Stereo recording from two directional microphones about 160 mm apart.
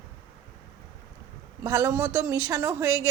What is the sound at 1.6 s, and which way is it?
A woman's voice, 20° right (ahead or behind).